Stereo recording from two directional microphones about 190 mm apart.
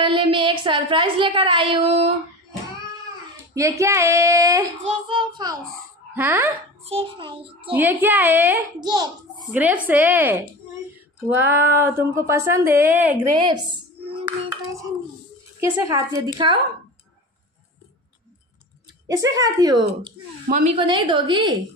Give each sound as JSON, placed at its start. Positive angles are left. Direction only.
{"t": 0.0, "sound": "speech", "side_deg": -25}
{"t": 3.5, "sound": "speech", "side_deg": -15}
{"t": 6.1, "sound": "speech", "side_deg": -10}
{"t": 6.8, "sound": "speech", "side_deg": -30}
{"t": 7.7, "sound": "speech", "side_deg": -10}
{"t": 8.8, "sound": "speech", "side_deg": -20}
{"t": 9.5, "sound": "speech", "side_deg": -5}
{"t": 13.3, "sound": "a sound", "side_deg": -25}
{"t": 15.6, "sound": "speech", "side_deg": -15}
{"t": 19.3, "sound": "speech", "side_deg": -20}